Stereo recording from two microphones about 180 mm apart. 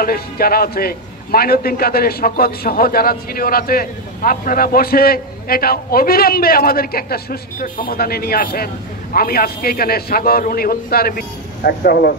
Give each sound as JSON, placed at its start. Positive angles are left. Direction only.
{"t": 0.0, "sound": "a man's voice", "side_deg": 55}